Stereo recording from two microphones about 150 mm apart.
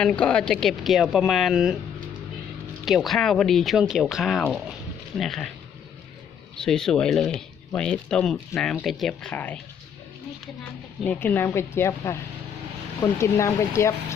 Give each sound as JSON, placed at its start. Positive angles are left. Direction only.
{"t": 0.0, "sound": "speech", "side_deg": 5}
{"t": 2.8, "sound": "speech", "side_deg": 0}
{"t": 6.6, "sound": "speech", "side_deg": 5}
{"t": 11.0, "sound": "a woman's voice", "side_deg": 10}